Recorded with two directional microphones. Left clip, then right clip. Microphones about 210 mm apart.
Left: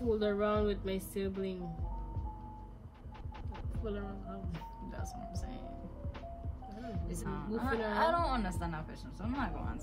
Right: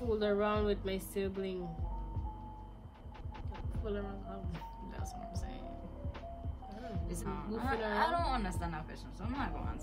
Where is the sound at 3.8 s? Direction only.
10° right (ahead or behind).